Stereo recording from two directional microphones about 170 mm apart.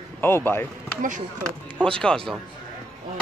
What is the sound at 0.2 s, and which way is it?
Speech, 15° left (ahead or behind).